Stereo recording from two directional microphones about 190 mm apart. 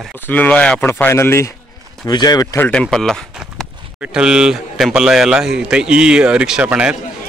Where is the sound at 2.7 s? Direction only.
Centre (ahead or behind).